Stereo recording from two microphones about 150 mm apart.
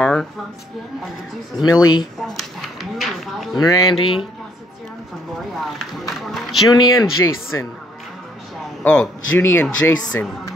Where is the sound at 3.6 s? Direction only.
25° left (ahead or behind).